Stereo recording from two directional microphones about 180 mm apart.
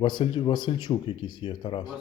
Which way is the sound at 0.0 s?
25° left (ahead or behind).